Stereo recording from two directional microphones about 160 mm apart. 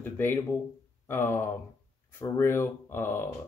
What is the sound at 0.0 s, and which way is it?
Speech, 15° left (ahead or behind).